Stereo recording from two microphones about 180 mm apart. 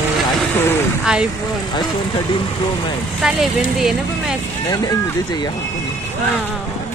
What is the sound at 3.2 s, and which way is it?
Speech, centre (ahead or behind).